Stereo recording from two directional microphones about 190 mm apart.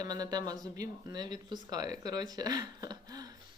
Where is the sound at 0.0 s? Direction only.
20° right (ahead or behind).